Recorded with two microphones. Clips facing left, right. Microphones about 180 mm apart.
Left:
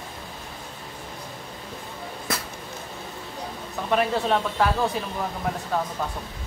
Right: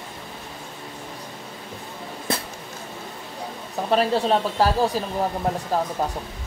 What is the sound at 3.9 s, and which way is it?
Speech, 30° right (ahead or behind).